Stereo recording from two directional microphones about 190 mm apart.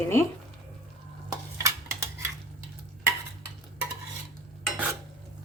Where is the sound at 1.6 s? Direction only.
15° right (ahead or behind).